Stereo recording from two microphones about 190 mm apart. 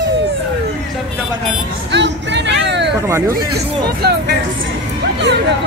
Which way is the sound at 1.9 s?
65° right (ahead or behind).